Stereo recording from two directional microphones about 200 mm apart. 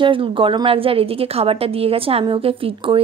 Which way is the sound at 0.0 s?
25° right (ahead or behind).